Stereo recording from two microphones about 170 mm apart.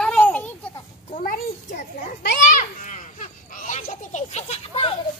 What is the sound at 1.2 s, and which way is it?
Children playing, 50° left (ahead or behind).